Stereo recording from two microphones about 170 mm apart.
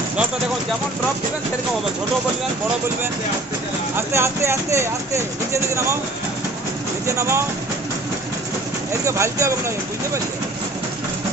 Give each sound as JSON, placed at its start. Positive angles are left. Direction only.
{"t": 3.9, "sound": "speech", "side_deg": -15}
{"t": 7.1, "sound": "speech", "side_deg": -15}
{"t": 9.0, "sound": "speech", "side_deg": -15}